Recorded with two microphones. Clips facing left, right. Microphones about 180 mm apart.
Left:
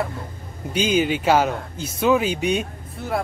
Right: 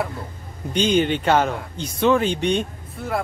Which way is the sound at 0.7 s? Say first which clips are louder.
Right 1 dB; 5° left (ahead or behind).